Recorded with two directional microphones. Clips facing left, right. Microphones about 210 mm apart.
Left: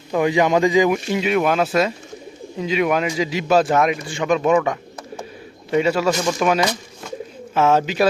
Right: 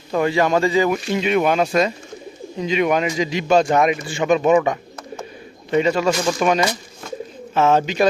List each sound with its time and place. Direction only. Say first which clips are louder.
0.1 s a man's voice: left 1 dB; 15° left (ahead or behind)
6.1 s speech: even; 15° right (ahead or behind)
6.4 s a man's voice: even; centre (ahead or behind)